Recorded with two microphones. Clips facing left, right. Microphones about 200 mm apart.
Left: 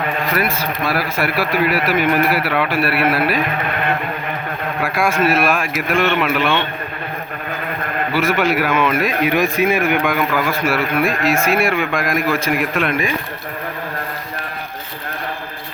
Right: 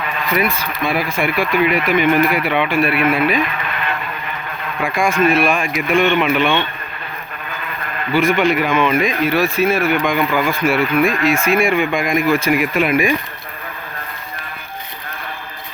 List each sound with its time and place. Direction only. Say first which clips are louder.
0.0 s a sound: left 3 dB; 50° left (ahead or behind)
0.3 s speech: right 1 dB; 5° left (ahead or behind)
3.4 s speech: left 3 dB; 50° left (ahead or behind)
4.8 s speech: right 2 dB; 5° left (ahead or behind)
8.1 s speech: right 3 dB; 5° left (ahead or behind)
9.2 s a man's voice: left 2 dB; 15° left (ahead or behind); by 13.1 s 5° right (ahead or behind)